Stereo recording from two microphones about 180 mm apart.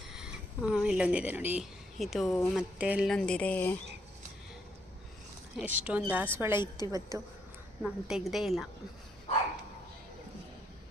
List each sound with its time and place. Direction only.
0.1 s speech: 5° right (ahead or behind)
5.5 s a woman's voice: 10° right (ahead or behind)
7.8 s speech: centre (ahead or behind)